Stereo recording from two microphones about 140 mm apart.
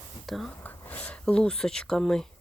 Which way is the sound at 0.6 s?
10° left (ahead or behind).